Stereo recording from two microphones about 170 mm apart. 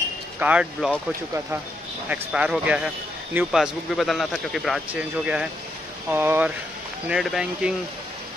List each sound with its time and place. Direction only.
0.4 s speech: 5° right (ahead or behind)
2.0 s speech: 5° right (ahead or behind)